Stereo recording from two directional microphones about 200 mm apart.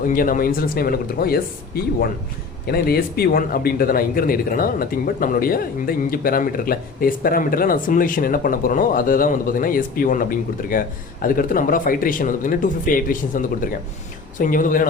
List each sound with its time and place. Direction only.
0.0 s speech: 45° left (ahead or behind)